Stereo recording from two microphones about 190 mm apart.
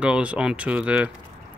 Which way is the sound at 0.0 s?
5° right (ahead or behind).